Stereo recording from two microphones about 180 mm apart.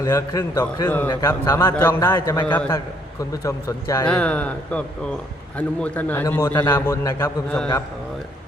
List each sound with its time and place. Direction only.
0.0 s a man's voice: 15° left (ahead or behind)
4.1 s a man's voice: 5° left (ahead or behind)